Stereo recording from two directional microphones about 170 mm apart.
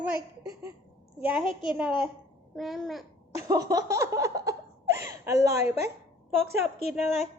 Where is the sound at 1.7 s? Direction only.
5° right (ahead or behind).